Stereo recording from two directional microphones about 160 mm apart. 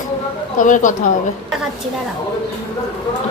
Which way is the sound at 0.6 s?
55° left (ahead or behind).